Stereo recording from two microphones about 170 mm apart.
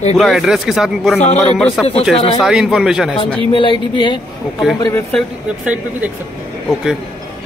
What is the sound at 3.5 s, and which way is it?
Speech, 30° left (ahead or behind).